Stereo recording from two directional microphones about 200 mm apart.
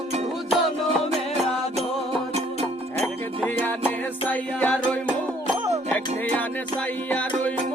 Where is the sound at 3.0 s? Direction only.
5° left (ahead or behind).